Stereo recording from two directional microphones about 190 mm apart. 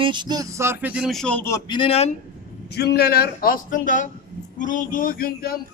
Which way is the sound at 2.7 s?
60° left (ahead or behind).